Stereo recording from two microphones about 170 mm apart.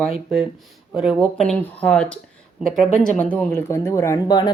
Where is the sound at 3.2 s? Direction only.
10° left (ahead or behind); by 4.5 s 25° left (ahead or behind).